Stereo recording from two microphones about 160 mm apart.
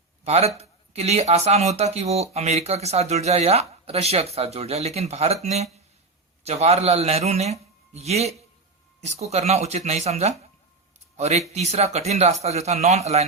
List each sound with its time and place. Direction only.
0.3 s speech: 40° right (ahead or behind)